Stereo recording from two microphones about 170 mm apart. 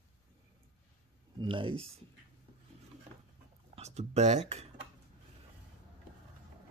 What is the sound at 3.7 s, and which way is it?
Speech, 40° right (ahead or behind).